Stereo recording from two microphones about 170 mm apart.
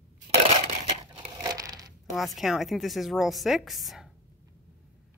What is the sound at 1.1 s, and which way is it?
Crushing, 25° right (ahead or behind).